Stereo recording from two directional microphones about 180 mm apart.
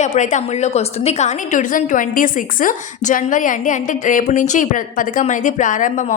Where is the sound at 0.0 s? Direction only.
40° left (ahead or behind).